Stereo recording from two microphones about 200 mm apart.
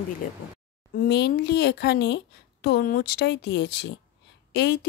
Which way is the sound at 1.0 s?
55° left (ahead or behind).